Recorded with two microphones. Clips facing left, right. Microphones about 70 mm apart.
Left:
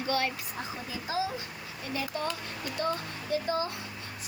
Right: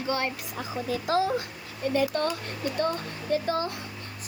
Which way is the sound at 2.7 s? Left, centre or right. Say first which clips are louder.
Right 2 dB; right.